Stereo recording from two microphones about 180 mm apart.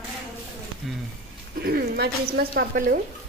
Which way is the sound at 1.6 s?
60° right (ahead or behind).